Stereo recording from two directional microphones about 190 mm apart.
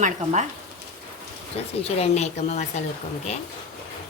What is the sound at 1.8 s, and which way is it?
Speech, 35° left (ahead or behind).